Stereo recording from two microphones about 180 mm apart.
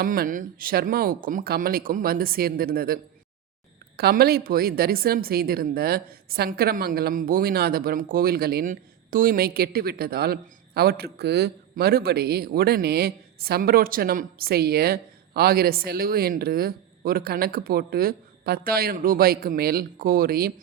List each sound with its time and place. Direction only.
0.0 s a woman's voice: 50° right (ahead or behind)